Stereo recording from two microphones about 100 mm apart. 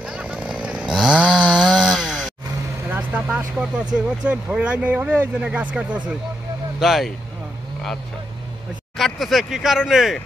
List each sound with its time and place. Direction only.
0.1 s chainsaw: 15° right (ahead or behind)
2.9 s vehicle: 15° right (ahead or behind)
3.3 s speech: 10° right (ahead or behind)
8.9 s speech: centre (ahead or behind)